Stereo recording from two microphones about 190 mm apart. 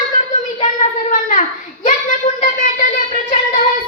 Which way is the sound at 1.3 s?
45° left (ahead or behind).